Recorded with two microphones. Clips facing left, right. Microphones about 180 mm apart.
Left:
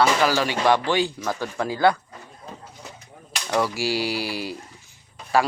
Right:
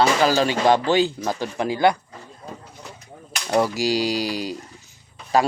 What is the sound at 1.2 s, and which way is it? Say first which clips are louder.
Speech: right 2 dB; 20° right (ahead or behind).